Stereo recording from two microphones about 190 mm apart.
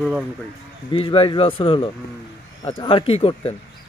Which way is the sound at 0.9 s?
30° left (ahead or behind).